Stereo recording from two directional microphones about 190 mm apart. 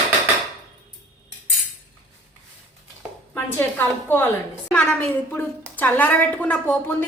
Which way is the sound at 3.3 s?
10° left (ahead or behind).